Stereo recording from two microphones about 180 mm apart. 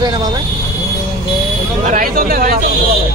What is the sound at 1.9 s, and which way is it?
Speech, 50° right (ahead or behind).